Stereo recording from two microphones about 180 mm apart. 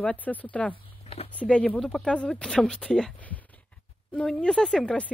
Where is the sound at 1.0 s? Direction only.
35° left (ahead or behind).